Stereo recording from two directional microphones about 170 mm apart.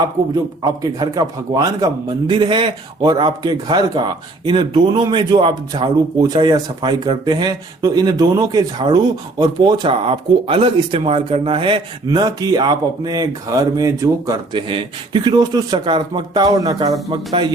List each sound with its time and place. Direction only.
0.6 s a man's voice: 25° right (ahead or behind)